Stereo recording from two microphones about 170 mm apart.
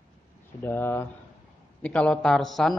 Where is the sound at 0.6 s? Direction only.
10° left (ahead or behind).